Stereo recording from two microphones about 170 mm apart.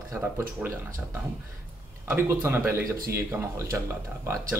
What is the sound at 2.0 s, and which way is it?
A man's voice, 15° right (ahead or behind).